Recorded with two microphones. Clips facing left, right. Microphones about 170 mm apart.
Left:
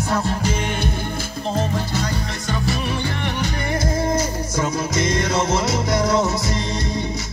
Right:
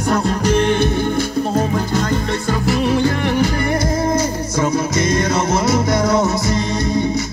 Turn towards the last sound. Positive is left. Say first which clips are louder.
# right 4 dB
turn(degrees=-65)  # may be behind; listen again after turning